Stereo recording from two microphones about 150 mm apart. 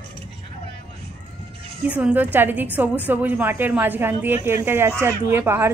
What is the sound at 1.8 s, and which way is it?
A woman's voice, 10° right (ahead or behind).